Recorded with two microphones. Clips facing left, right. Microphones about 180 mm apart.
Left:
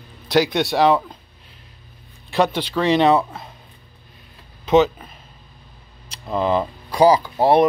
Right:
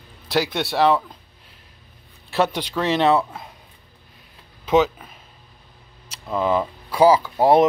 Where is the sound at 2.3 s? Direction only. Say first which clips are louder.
Left 2 dB; 10° right (ahead or behind).